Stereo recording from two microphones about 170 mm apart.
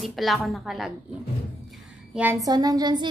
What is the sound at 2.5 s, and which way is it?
Speech, 25° right (ahead or behind).